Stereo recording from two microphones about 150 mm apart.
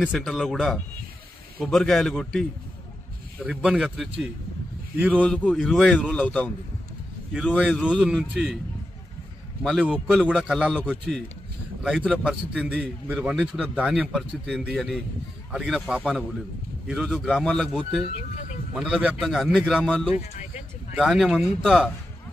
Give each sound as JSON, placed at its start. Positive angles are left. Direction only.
{"t": 0.1, "sound": "a man's voice", "side_deg": 0}
{"t": 5.2, "sound": "a man's voice", "side_deg": 10}
{"t": 7.3, "sound": "speech", "side_deg": -5}
{"t": 9.6, "sound": "a man's voice", "side_deg": 0}
{"t": 18.1, "sound": "speech", "side_deg": 50}
{"t": 18.8, "sound": "a man's voice", "side_deg": -5}